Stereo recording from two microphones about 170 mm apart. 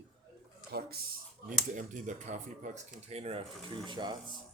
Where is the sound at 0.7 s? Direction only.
65° right (ahead or behind).